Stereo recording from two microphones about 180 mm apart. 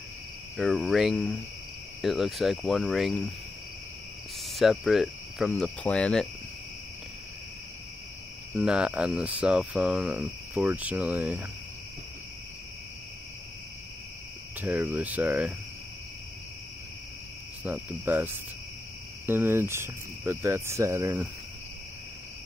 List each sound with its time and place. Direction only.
0.6 s speech: centre (ahead or behind)
4.4 s speech: centre (ahead or behind)
8.5 s speech: 5° right (ahead or behind)
14.6 s speech: 10° right (ahead or behind)
17.6 s speech: 10° right (ahead or behind)